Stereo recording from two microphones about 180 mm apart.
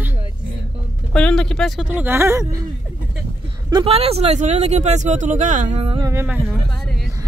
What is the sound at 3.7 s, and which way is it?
Speech, 30° right (ahead or behind).